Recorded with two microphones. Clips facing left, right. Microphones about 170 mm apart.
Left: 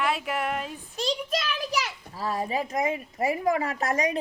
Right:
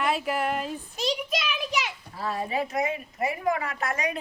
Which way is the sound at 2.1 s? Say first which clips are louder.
Even; 35° left (ahead or behind).